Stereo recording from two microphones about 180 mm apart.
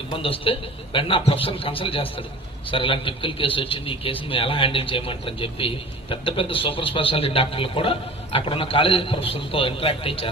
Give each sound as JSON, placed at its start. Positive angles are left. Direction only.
{"t": 0.1, "sound": "a man's voice", "side_deg": 30}